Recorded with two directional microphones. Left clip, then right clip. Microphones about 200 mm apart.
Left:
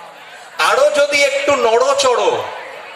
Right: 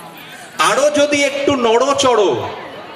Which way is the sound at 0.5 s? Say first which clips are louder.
Left 1 dB; 50° left (ahead or behind).